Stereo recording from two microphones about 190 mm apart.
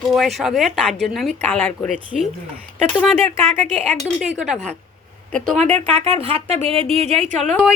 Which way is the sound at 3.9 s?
Centre (ahead or behind).